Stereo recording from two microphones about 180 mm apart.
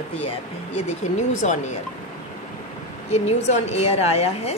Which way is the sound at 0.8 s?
40° left (ahead or behind).